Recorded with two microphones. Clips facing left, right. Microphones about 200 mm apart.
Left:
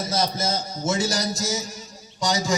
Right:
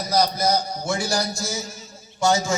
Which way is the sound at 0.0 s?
25° left (ahead or behind).